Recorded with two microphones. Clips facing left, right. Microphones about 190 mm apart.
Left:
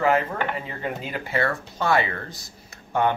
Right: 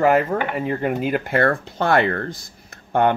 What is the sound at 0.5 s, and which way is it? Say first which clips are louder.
Speech: right 9 dB; 60° right (ahead or behind).